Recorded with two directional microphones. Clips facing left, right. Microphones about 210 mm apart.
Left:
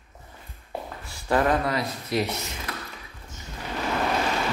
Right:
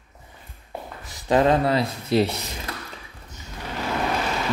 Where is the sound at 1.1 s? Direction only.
20° right (ahead or behind).